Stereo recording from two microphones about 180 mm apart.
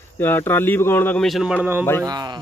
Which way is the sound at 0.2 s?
10° left (ahead or behind).